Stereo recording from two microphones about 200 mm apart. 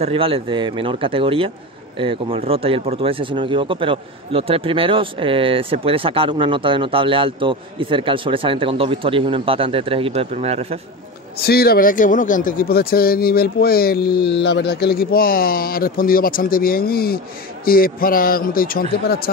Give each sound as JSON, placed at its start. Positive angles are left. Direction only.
{"t": 0.0, "sound": "speech", "side_deg": -25}
{"t": 11.3, "sound": "speech", "side_deg": 50}